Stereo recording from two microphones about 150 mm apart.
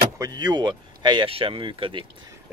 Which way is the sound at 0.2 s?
25° right (ahead or behind).